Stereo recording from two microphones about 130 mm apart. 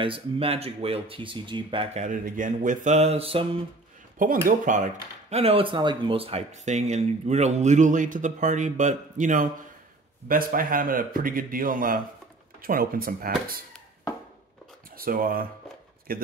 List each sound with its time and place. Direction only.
0.0 s speech: 45° right (ahead or behind)
2.0 s speech: 85° right; by 3.4 s 50° right (ahead or behind)
4.5 s speech: 75° right (ahead or behind)
5.4 s speech: 45° right (ahead or behind)
6.5 s speech: 65° right (ahead or behind); by 13.6 s 90° right
14.9 s speech: 90° right